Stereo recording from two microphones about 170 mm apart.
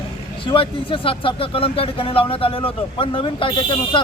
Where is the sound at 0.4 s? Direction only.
30° left (ahead or behind).